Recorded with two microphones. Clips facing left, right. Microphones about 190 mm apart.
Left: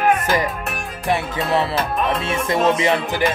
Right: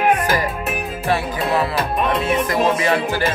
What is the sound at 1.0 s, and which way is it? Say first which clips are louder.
Music: even; 25° left (ahead or behind).